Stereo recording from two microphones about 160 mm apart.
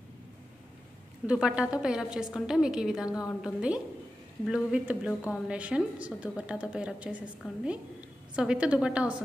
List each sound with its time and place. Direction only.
1.2 s a woman's voice: 5° right (ahead or behind)
3.1 s a woman's voice: 20° left (ahead or behind)
3.4 s a woman's voice: 5° right (ahead or behind)